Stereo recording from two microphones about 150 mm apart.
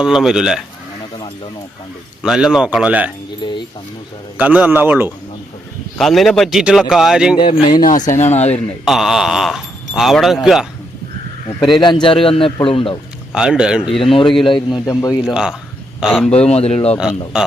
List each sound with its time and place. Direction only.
0.0 s speech: 5° right (ahead or behind)
2.2 s speech: 5° right (ahead or behind)
3.4 s speech: 30° left (ahead or behind)
4.4 s a man's voice: 10° right (ahead or behind)
6.0 s speech: centre (ahead or behind)
7.4 s speech: 65° left (ahead or behind); by 8.6 s 45° left (ahead or behind)
8.8 s speech: centre (ahead or behind)
11.7 s speech: 30° left (ahead or behind)
13.3 s speech: 5° right (ahead or behind)
14.4 s speech: 35° left (ahead or behind)
14.8 s a man's voice: 25° left (ahead or behind)
15.3 s speech: 5° right (ahead or behind)
16.3 s speech: 45° left (ahead or behind)
17.3 s speech: 5° right (ahead or behind)